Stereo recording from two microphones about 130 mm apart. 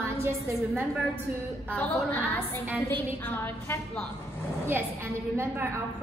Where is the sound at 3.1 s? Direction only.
15° left (ahead or behind).